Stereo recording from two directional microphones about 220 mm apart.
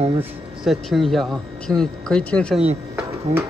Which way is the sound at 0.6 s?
Centre (ahead or behind).